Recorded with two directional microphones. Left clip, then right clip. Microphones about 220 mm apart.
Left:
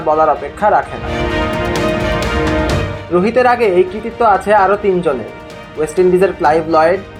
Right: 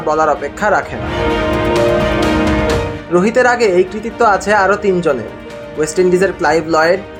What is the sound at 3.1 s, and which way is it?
Speech, 20° right (ahead or behind).